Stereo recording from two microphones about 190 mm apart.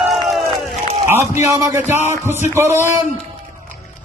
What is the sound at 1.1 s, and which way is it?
Speech, 15° right (ahead or behind).